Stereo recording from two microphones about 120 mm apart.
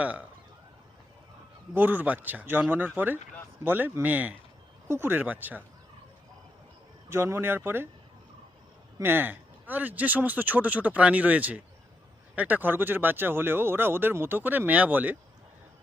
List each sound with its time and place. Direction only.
0.0 s speech: 10° right (ahead or behind)
1.7 s speech: 15° right (ahead or behind)
7.1 s speech: 20° right (ahead or behind)
9.0 s speech: 15° right (ahead or behind)